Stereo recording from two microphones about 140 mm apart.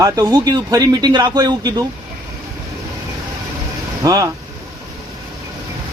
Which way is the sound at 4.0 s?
25° right (ahead or behind).